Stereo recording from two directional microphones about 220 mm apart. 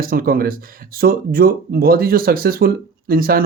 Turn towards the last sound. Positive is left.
turn(degrees=-40)  # may be behind; listen again after turning